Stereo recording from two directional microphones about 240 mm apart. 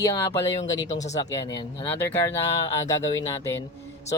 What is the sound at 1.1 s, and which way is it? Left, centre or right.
Speech, centre.